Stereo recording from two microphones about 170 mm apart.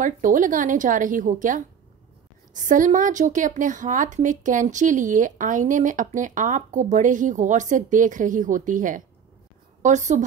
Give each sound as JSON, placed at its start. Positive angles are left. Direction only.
{"t": 0.0, "sound": "a woman's voice", "side_deg": -50}